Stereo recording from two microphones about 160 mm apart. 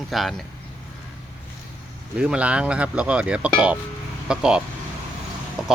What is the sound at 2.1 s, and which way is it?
Speech, 5° right (ahead or behind).